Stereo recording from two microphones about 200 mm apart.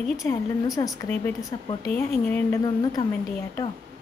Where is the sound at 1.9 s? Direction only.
10° left (ahead or behind).